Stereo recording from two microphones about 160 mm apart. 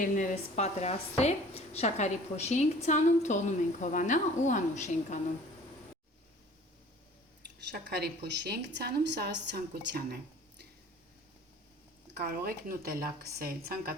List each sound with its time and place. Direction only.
0.0 s a woman's voice: 50° left (ahead or behind)
7.7 s a woman's voice: 90° right; by 10.2 s 75° right (ahead or behind)
12.1 s a woman's voice: 75° right (ahead or behind)